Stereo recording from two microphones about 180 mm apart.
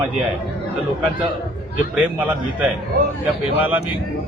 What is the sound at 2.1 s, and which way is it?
Speech, 10° right (ahead or behind).